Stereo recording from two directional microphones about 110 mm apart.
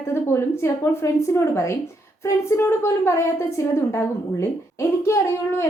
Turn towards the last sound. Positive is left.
turn(degrees=25)  # may be behind; listen again after turning